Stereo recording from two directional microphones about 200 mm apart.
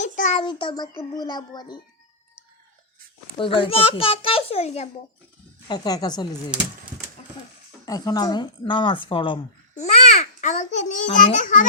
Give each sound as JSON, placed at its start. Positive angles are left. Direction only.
{"t": 0.0, "sound": "a sound", "side_deg": 35}
{"t": 0.4, "sound": "a child's voice", "side_deg": 20}
{"t": 3.3, "sound": "a child's voice", "side_deg": 25}
{"t": 5.6, "sound": "a child's voice", "side_deg": 20}
{"t": 7.9, "sound": "a woman's voice", "side_deg": 20}